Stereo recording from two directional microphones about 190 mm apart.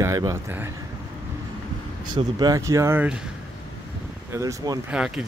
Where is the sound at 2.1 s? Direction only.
20° right (ahead or behind).